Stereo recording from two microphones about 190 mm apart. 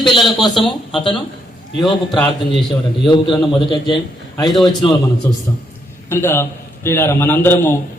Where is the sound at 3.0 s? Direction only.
25° left (ahead or behind).